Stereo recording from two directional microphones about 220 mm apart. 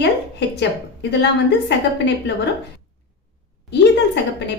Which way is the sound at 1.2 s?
50° left (ahead or behind).